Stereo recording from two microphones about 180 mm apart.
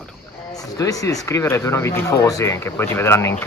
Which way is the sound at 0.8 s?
20° left (ahead or behind).